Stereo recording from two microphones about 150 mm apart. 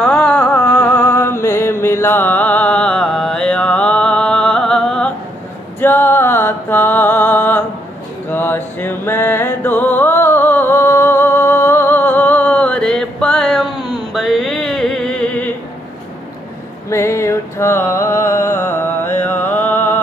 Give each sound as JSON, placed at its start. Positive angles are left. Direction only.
{"t": 0.0, "sound": "a sound", "side_deg": 10}
{"t": 5.8, "sound": "music", "side_deg": 15}
{"t": 16.9, "sound": "music", "side_deg": 20}